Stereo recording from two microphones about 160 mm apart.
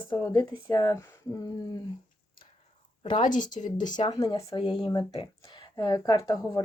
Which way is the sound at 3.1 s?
55° left (ahead or behind).